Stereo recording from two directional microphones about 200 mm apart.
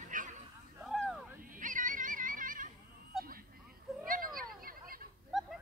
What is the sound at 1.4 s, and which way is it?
Music, 40° right (ahead or behind).